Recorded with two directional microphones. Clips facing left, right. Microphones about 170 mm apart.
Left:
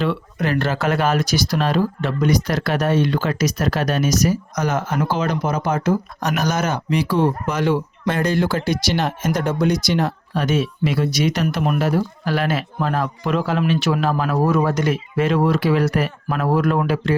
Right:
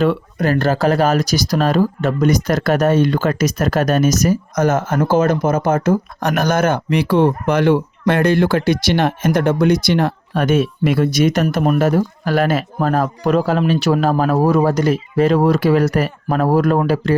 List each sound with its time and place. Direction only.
0.0 s speech: 45° right (ahead or behind)